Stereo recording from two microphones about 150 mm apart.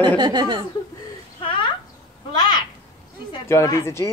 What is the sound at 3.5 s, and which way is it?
Speech, 20° left (ahead or behind).